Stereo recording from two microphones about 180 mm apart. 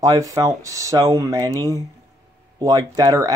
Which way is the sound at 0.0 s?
20° right (ahead or behind).